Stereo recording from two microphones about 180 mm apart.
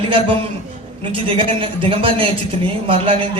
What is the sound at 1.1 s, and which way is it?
Speech, 30° right (ahead or behind).